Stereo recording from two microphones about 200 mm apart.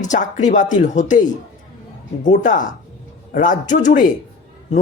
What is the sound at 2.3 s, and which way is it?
Speech, 40° left (ahead or behind).